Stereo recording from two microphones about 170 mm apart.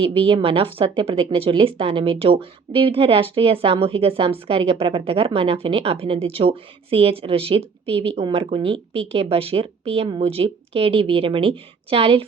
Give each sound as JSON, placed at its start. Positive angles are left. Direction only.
{"t": 0.0, "sound": "a woman's voice", "side_deg": -30}